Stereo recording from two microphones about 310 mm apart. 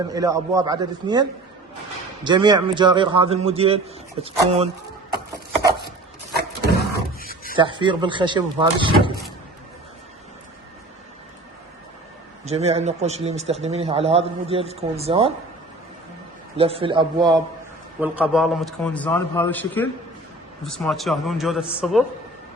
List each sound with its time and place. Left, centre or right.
0.1 s a man's voice: centre
7.2 s a sound: left
7.5 s speech: centre
12.5 s a man's voice: centre
16.6 s a man's voice: centre